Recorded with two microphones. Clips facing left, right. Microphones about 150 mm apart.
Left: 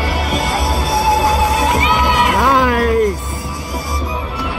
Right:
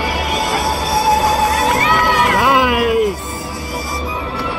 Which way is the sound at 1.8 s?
20° left (ahead or behind).